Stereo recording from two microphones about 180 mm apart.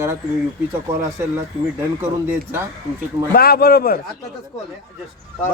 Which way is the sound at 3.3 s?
60° left (ahead or behind).